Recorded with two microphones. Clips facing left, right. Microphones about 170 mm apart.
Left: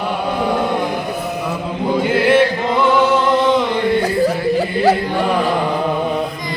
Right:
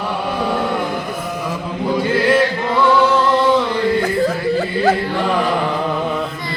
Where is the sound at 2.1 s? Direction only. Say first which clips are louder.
Left 2 dB; 25° left (ahead or behind).